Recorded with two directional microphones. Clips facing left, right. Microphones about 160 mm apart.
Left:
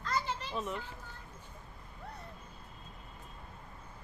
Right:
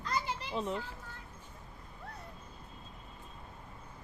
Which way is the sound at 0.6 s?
30° right (ahead or behind).